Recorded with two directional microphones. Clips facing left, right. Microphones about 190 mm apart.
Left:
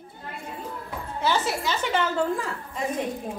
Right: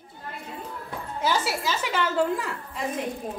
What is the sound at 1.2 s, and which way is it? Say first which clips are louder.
Music: left 1 dB; 10° right (ahead or behind).